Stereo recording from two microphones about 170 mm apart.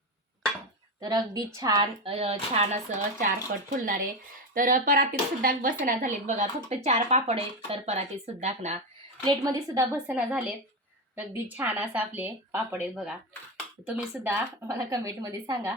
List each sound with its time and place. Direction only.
1.0 s a woman's voice: 20° right (ahead or behind)
2.0 s speech: 35° right (ahead or behind)
9.2 s speech: 20° right (ahead or behind)